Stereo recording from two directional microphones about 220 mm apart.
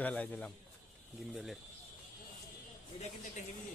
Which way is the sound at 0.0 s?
5° left (ahead or behind).